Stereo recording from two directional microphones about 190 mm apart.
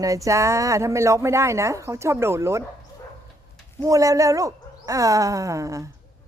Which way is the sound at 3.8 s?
15° right (ahead or behind).